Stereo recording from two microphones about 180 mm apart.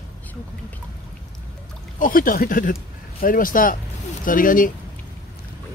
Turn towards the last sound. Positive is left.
turn(degrees=50)  # may be behind; listen again after turning